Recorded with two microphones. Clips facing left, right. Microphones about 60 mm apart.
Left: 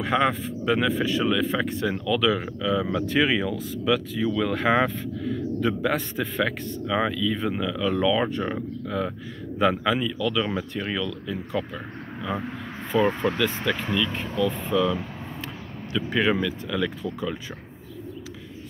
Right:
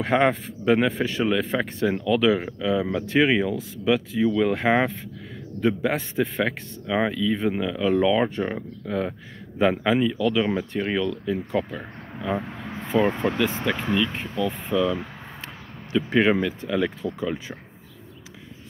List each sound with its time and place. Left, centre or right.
0.0 s speech: right